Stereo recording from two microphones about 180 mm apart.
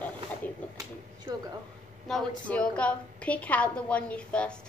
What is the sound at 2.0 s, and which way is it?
A woman's voice, 5° left (ahead or behind).